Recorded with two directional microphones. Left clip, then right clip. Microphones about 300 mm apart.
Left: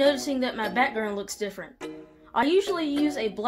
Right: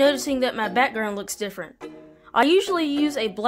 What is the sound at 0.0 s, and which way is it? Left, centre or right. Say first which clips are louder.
A woman's voice: right 3 dB; right.